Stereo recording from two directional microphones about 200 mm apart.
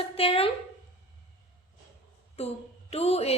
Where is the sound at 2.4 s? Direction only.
30° left (ahead or behind).